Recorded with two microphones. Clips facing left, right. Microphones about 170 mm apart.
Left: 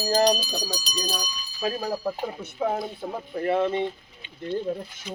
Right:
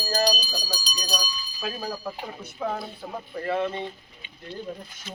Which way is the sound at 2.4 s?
25° left (ahead or behind).